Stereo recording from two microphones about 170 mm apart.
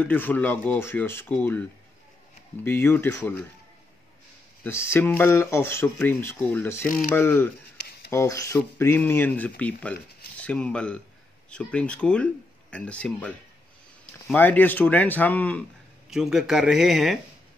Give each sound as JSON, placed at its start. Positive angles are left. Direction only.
{"t": 0.0, "sound": "speech", "side_deg": 10}
{"t": 4.6, "sound": "speech", "side_deg": 15}
{"t": 16.1, "sound": "speech", "side_deg": 0}